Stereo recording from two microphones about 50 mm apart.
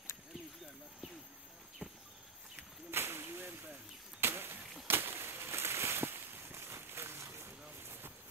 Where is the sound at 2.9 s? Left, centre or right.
Right.